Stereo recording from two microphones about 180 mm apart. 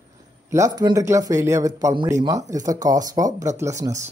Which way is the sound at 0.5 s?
20° right (ahead or behind).